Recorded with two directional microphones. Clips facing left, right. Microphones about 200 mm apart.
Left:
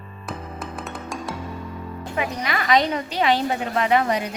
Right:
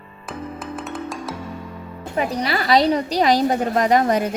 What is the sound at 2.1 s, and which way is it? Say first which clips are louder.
A woman's voice: right 4 dB; 35° right (ahead or behind).